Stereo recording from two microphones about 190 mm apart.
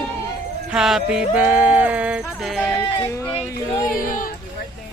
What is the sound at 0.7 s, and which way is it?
Music, 5° right (ahead or behind).